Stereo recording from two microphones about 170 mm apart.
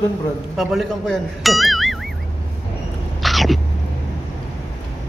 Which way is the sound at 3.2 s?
Centre (ahead or behind).